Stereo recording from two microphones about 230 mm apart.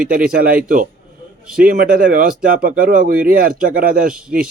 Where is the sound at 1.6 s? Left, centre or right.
Right.